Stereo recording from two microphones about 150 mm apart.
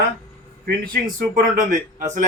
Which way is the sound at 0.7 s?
75° right (ahead or behind).